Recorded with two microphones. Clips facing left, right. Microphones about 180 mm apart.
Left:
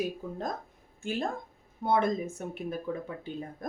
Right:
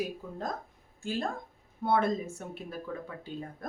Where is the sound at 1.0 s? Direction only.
20° left (ahead or behind).